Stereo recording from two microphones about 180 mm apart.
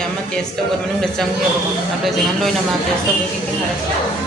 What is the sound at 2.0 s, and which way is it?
Music, centre (ahead or behind).